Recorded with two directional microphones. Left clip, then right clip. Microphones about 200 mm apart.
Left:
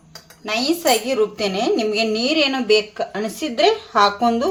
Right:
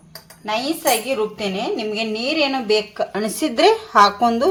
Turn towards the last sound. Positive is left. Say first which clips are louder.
# right 2 dB
turn(degrees=-10)  # may be behind; listen again after turning